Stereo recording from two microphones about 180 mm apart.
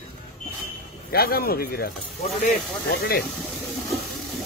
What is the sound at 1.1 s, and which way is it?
Speech, 60° left (ahead or behind).